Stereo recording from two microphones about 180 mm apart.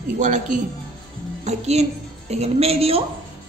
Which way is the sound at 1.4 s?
35° right (ahead or behind).